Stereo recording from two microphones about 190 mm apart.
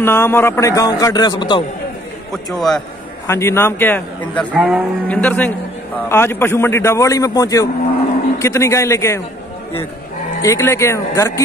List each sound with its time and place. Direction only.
0.0 s a man's voice: 10° left (ahead or behind)
2.3 s a man's voice: centre (ahead or behind)
3.3 s a man's voice: 15° left (ahead or behind)
4.6 s speech: 5° right (ahead or behind)
5.0 s a man's voice: 10° left (ahead or behind)
10.4 s a man's voice: 15° left (ahead or behind)